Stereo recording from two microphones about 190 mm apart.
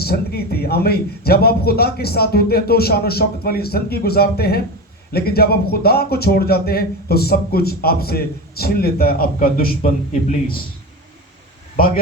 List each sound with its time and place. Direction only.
0.0 s speech: 55° left (ahead or behind)